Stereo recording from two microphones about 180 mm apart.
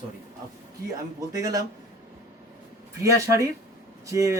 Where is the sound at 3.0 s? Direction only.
15° right (ahead or behind).